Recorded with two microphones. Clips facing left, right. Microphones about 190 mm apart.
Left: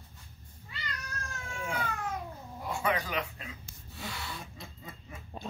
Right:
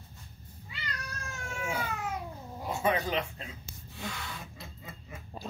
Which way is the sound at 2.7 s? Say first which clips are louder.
Right 3 dB; 25° right (ahead or behind).